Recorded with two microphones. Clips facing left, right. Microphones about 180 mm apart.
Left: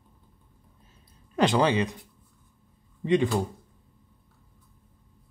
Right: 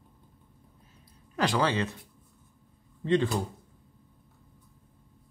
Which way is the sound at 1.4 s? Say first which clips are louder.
Left 4 dB; 20° left (ahead or behind).